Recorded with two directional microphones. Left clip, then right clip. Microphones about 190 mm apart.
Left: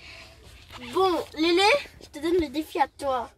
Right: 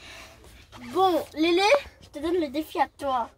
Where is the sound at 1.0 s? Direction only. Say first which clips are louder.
Right 2 dB; 15° right (ahead or behind).